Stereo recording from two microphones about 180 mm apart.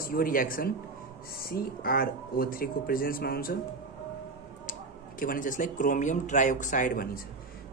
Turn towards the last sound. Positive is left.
turn(degrees=55)  # may be behind; listen again after turning